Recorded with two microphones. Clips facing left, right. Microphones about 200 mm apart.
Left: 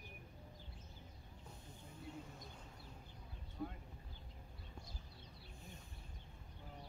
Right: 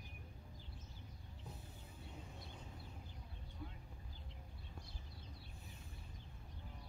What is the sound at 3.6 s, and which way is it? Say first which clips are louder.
Vehicle: left 8 dB; 45° left (ahead or behind).